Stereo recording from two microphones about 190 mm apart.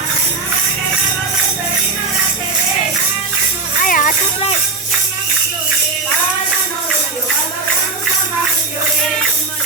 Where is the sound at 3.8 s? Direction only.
45° left (ahead or behind).